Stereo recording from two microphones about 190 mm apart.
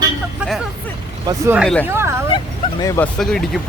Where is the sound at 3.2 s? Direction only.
Centre (ahead or behind).